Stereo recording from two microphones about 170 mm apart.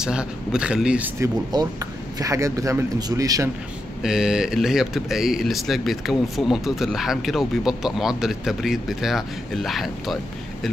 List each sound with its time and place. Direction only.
0.0 s speech: 5° right (ahead or behind)
1.5 s speech: 20° right (ahead or behind)
4.0 s speech: 5° right (ahead or behind)